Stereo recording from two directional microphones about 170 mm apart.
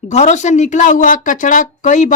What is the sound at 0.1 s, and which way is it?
A woman's voice, 45° left (ahead or behind).